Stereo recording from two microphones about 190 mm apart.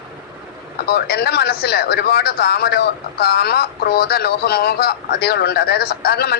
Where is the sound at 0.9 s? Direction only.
55° left (ahead or behind).